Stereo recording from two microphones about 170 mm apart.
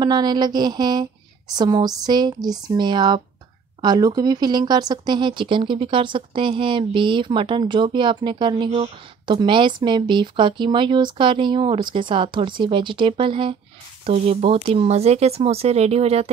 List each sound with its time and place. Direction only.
0.0 s speech: 25° right (ahead or behind)